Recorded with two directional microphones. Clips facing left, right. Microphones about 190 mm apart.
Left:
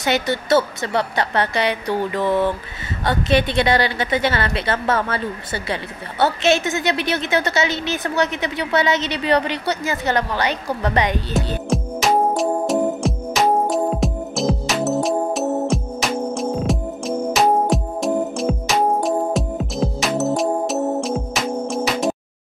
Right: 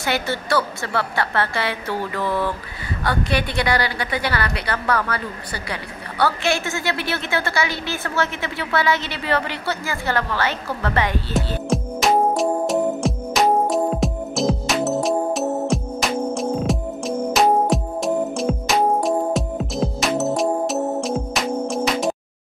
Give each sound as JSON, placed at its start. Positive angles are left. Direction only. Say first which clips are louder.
{"t": 0.0, "sound": "a woman's voice", "louder": "left 3 dB", "side_deg": 20}
{"t": 11.3, "sound": "music", "louder": "even", "side_deg": 0}